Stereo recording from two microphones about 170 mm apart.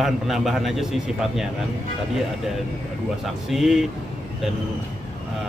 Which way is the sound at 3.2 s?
Centre (ahead or behind).